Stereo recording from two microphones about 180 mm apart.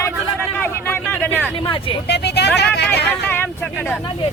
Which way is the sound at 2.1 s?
70° left (ahead or behind).